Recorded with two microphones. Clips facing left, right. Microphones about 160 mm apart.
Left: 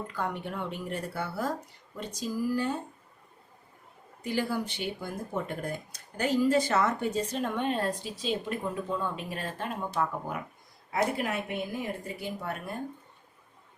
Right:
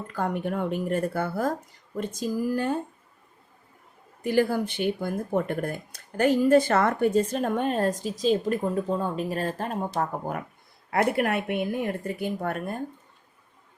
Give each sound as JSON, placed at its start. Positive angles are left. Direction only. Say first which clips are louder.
{"t": 0.1, "sound": "speech", "louder": "right 6 dB", "side_deg": -45}
{"t": 4.2, "sound": "speech", "louder": "right 7 dB", "side_deg": -55}
{"t": 10.9, "sound": "a woman's voice", "louder": "right 5 dB", "side_deg": -60}